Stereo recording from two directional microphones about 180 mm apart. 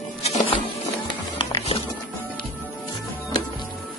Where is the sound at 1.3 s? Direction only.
30° left (ahead or behind).